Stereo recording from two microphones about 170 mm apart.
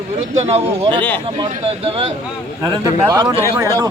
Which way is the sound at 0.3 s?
40° right (ahead or behind).